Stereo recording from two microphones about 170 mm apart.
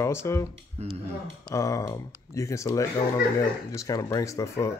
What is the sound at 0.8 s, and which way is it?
Speech, 40° right (ahead or behind).